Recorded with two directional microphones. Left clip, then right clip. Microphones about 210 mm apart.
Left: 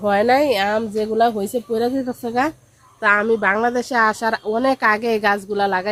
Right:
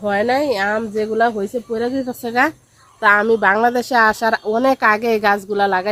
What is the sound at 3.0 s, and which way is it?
A woman's voice, 20° right (ahead or behind).